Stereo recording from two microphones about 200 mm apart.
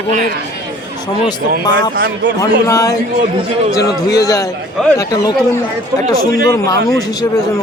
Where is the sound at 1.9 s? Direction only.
50° right (ahead or behind).